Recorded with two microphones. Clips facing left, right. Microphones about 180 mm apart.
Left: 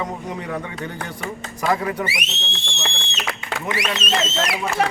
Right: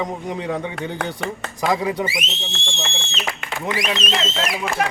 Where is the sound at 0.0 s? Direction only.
15° right (ahead or behind).